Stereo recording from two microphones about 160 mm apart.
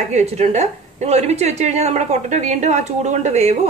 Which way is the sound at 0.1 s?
45° right (ahead or behind).